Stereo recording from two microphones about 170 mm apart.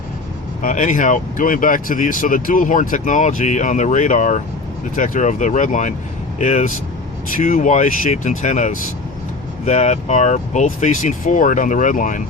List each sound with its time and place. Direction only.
0.6 s speech: 50° left (ahead or behind)